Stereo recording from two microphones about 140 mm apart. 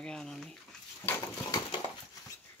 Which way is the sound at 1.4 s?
30° left (ahead or behind).